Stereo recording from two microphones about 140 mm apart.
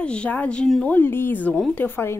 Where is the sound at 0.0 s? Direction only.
10° left (ahead or behind).